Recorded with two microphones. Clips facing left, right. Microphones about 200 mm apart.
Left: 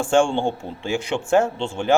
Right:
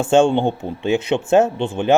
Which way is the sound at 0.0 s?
20° right (ahead or behind).